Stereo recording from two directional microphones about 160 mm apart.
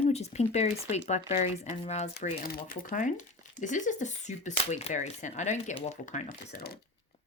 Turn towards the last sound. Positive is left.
turn(degrees=50)  # may be behind; listen again after turning